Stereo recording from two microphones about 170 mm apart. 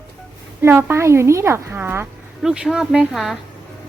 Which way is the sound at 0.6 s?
15° right (ahead or behind).